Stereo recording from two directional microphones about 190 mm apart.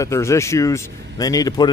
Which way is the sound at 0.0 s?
15° left (ahead or behind).